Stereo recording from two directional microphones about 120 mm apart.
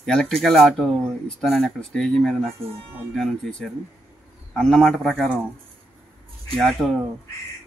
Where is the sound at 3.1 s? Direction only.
5° left (ahead or behind).